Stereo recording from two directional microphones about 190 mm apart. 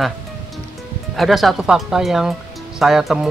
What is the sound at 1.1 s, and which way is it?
Speech, centre (ahead or behind).